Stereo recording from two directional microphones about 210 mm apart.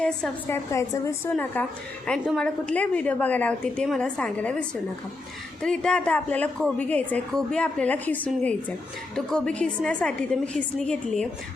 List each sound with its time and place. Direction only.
0.0 s a woman's voice: 10° left (ahead or behind)